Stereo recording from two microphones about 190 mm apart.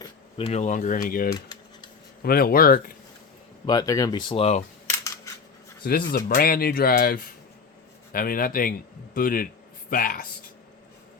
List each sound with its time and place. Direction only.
0.0 s speech: 30° left (ahead or behind); by 2.9 s 50° left (ahead or behind)
3.7 s speech: 20° left (ahead or behind)
4.9 s camera: 15° left (ahead or behind)
5.8 s speech: 55° left (ahead or behind)